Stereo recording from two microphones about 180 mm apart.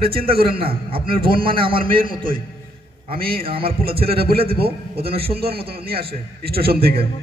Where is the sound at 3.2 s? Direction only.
55° right (ahead or behind).